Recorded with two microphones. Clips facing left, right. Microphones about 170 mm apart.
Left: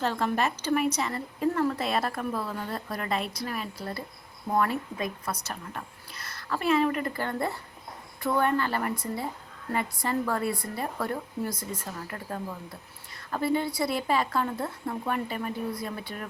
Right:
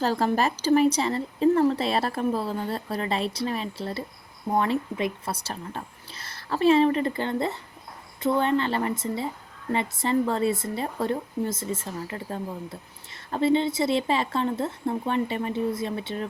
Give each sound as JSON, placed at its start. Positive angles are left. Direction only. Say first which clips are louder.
{"t": 0.0, "sound": "a woman's voice", "louder": "right 4 dB", "side_deg": -35}